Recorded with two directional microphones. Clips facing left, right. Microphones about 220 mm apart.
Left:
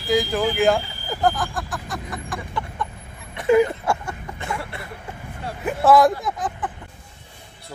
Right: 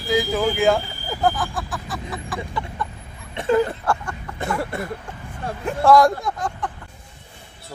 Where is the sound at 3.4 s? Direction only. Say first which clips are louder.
Left 2 dB; 10° left (ahead or behind).